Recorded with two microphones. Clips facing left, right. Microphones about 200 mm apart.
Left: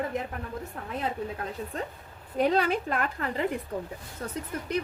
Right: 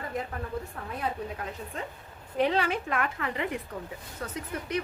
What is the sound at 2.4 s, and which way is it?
A woman's voice, 40° left (ahead or behind).